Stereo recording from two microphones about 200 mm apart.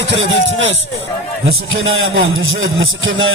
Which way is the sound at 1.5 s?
80° right.